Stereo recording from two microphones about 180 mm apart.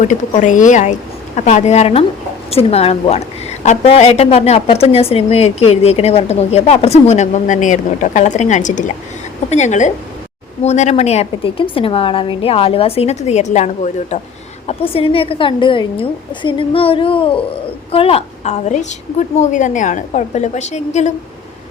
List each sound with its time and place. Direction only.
0.0 s a woman's voice: 45° left (ahead or behind)